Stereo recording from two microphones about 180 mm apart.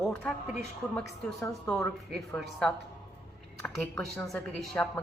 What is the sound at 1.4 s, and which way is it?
Speech, 15° left (ahead or behind).